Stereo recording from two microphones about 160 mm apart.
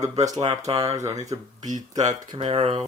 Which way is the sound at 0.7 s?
35° right (ahead or behind).